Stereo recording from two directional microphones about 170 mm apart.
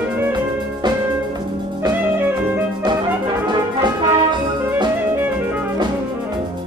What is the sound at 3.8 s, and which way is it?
Music, 25° right (ahead or behind).